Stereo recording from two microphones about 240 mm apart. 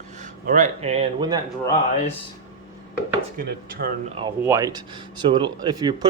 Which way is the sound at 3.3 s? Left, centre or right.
Right.